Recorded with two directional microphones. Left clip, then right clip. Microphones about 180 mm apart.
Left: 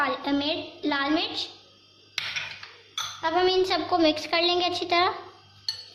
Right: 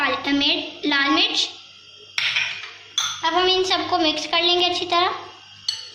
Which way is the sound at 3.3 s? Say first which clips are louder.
Right 3 dB; 50° left (ahead or behind).